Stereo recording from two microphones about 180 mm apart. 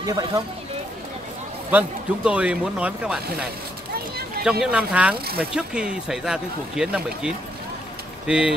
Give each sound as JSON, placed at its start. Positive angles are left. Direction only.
{"t": 0.0, "sound": "speech", "side_deg": -20}
{"t": 1.7, "sound": "speech", "side_deg": -10}
{"t": 4.5, "sound": "speech", "side_deg": -5}
{"t": 5.1, "sound": "speech", "side_deg": -60}
{"t": 5.4, "sound": "speech", "side_deg": -5}